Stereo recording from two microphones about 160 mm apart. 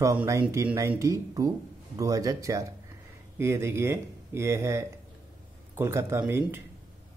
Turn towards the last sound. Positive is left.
turn(degrees=-15)  # may be behind; listen again after turning